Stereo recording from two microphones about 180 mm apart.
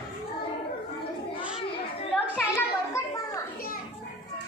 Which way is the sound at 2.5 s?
15° left (ahead or behind).